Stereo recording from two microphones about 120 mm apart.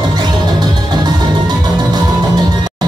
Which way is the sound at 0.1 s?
35° right (ahead or behind).